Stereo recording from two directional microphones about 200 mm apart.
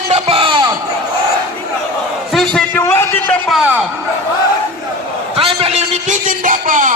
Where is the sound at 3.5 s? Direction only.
5° right (ahead or behind).